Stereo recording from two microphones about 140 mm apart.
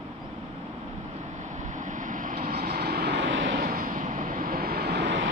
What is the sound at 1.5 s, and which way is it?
Vehicle, 60° right (ahead or behind).